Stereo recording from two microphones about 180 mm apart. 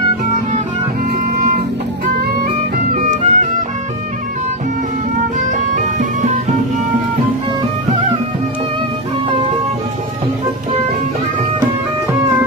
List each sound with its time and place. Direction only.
2.9 s music: 45° right (ahead or behind)
5.5 s music: 45° right (ahead or behind)